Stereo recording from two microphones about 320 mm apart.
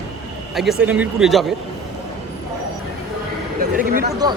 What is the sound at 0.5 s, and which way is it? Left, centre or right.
Speech, centre.